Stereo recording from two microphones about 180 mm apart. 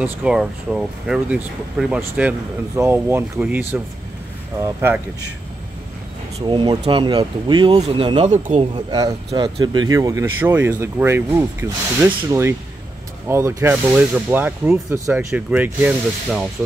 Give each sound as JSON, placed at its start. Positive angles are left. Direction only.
{"t": 0.0, "sound": "speech", "side_deg": -5}
{"t": 4.6, "sound": "speech", "side_deg": -20}
{"t": 6.4, "sound": "speech", "side_deg": -25}
{"t": 8.4, "sound": "speech", "side_deg": -40}
{"t": 8.7, "sound": "speech", "side_deg": -20}
{"t": 12.1, "sound": "speech", "side_deg": -25}
{"t": 13.3, "sound": "speech", "side_deg": -15}